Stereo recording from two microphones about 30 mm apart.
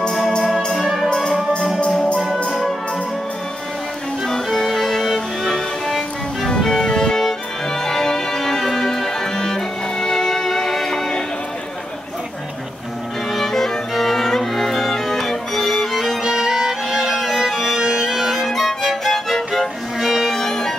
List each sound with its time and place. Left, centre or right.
0.7 s music: centre
4.5 s music: centre
13.5 s music: centre
16.3 s music: right
18.5 s violin: centre
18.8 s music: centre